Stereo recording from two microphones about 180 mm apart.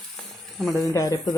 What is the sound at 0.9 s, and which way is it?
Speech, 20° left (ahead or behind).